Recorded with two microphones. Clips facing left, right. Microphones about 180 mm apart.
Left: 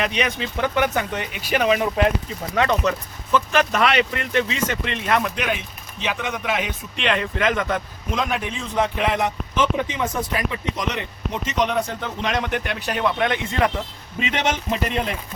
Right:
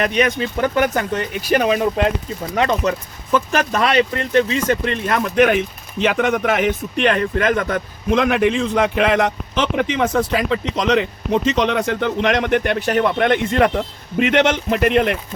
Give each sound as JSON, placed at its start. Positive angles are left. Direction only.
{"t": 0.0, "sound": "speech", "side_deg": -45}
{"t": 2.6, "sound": "speech", "side_deg": -30}
{"t": 3.3, "sound": "speech", "side_deg": -40}